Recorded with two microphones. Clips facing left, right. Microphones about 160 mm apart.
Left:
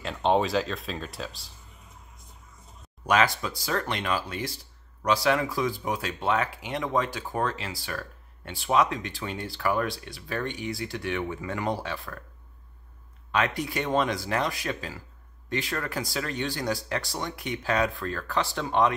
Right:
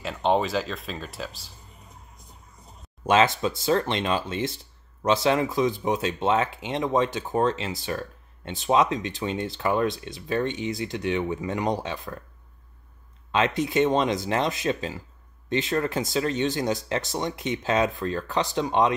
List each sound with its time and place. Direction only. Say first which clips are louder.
0.0 s speech: right 1 dB; centre (ahead or behind)
3.1 s speech: right 4 dB; 25° right (ahead or behind)
13.3 s speech: right 4 dB; 20° right (ahead or behind)